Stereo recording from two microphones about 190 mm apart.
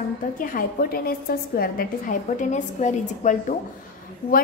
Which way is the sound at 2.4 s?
40° left (ahead or behind).